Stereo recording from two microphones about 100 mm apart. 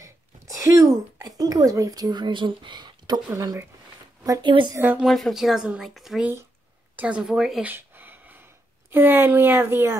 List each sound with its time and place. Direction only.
0.0 s speech: 30° right (ahead or behind); by 3.2 s 50° right (ahead or behind)
3.3 s speech: 30° right (ahead or behind)
4.2 s speech: 45° right (ahead or behind)
5.0 s speech: centre (ahead or behind)
7.6 s a sound: 20° right (ahead or behind)
8.9 s speech: 20° right (ahead or behind)